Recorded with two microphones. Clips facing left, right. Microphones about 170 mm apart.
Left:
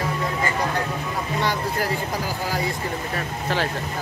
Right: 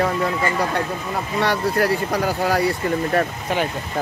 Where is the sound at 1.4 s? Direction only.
65° right (ahead or behind).